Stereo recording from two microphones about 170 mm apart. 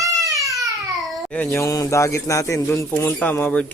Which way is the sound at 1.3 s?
10° left (ahead or behind).